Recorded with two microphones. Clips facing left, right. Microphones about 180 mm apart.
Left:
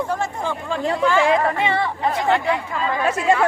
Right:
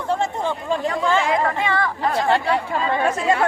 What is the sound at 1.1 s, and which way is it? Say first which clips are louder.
Speech: left 2 dB; 20° right (ahead or behind).